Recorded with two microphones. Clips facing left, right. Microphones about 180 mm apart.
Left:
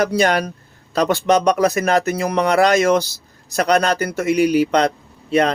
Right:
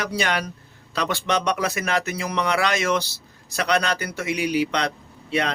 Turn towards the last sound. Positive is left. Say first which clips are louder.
# left 8 dB
turn(degrees=45)  # may be behind; listen again after turning